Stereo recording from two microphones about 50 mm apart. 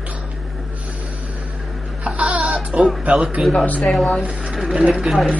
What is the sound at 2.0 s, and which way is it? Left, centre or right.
Baby cry, right.